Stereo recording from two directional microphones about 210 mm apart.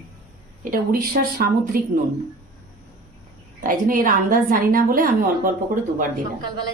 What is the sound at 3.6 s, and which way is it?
A woman's voice, 40° right (ahead or behind).